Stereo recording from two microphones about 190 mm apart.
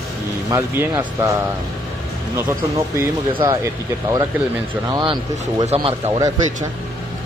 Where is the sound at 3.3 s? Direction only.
20° right (ahead or behind).